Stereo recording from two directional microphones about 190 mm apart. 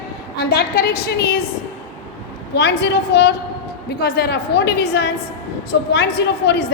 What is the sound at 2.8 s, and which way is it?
A woman's voice, 60° left (ahead or behind).